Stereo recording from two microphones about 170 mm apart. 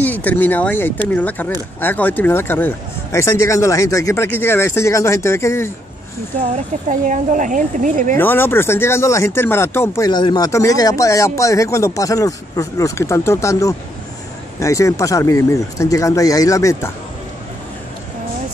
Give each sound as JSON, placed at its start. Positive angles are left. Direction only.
{"t": 0.0, "sound": "speech", "side_deg": 10}
{"t": 6.5, "sound": "speech", "side_deg": -45}
{"t": 8.2, "sound": "speech", "side_deg": 10}